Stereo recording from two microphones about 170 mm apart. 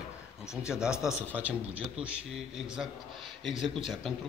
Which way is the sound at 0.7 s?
5° right (ahead or behind).